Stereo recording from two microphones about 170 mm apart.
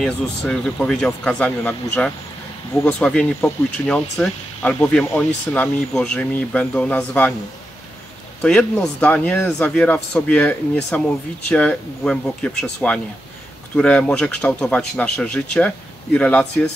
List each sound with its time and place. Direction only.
0.0 s speech: 5° left (ahead or behind)
8.4 s speech: 5° left (ahead or behind)